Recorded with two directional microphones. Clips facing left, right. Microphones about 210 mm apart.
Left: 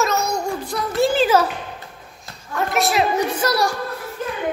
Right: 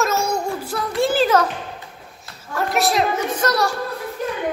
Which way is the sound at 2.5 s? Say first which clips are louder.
Even; centre (ahead or behind).